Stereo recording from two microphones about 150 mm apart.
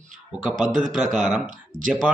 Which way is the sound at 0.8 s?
Centre (ahead or behind).